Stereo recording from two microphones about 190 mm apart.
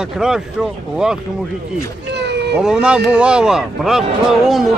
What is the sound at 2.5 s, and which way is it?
A man's voice, 5° right (ahead or behind).